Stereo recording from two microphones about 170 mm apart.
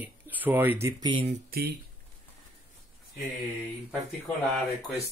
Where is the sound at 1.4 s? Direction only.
65° right (ahead or behind).